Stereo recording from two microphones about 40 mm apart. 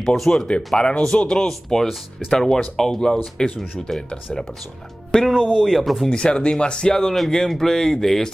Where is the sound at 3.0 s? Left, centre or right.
Centre.